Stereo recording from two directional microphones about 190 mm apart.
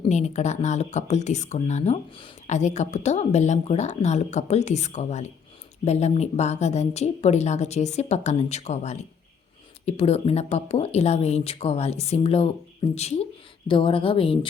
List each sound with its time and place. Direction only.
0.0 s a woman's voice: 35° left (ahead or behind)